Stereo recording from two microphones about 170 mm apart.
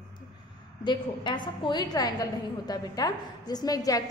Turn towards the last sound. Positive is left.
turn(degrees=20)  # may be behind; listen again after turning